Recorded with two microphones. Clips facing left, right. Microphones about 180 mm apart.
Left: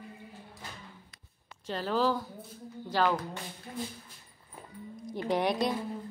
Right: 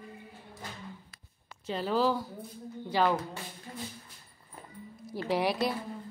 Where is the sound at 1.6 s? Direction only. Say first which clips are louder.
Right 1 dB; 5° right (ahead or behind).